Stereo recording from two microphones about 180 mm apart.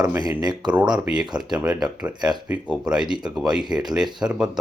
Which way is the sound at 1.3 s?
25° right (ahead or behind).